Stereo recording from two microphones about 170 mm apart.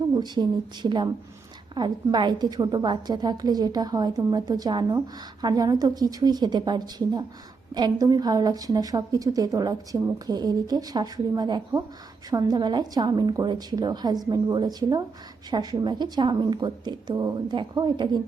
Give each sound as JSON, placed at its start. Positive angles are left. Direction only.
{"t": 0.2, "sound": "a woman's voice", "side_deg": -25}